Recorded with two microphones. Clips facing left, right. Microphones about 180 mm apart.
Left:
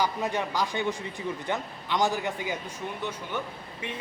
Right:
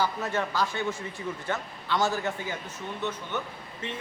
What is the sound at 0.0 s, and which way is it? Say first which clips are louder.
A man's voice: even; 15° left (ahead or behind).